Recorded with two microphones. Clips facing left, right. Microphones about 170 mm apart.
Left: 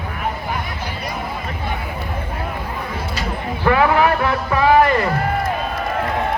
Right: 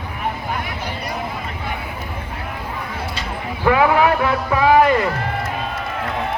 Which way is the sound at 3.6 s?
15° right (ahead or behind).